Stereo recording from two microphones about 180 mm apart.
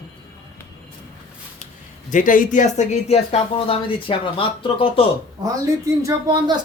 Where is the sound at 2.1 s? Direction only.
45° left (ahead or behind); by 5.0 s 30° left (ahead or behind).